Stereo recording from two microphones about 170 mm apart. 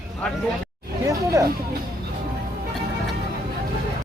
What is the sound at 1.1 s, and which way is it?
Speech, 20° right (ahead or behind).